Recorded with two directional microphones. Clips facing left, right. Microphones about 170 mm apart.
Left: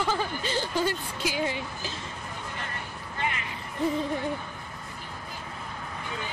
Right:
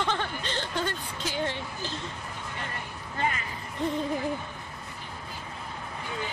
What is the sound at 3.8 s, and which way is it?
Music, centre (ahead or behind).